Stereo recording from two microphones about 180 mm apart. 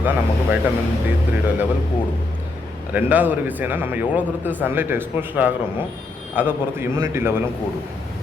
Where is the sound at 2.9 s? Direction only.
10° right (ahead or behind).